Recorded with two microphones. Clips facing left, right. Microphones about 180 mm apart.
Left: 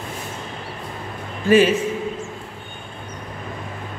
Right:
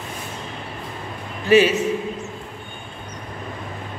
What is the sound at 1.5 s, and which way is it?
Speech, 50° left (ahead or behind).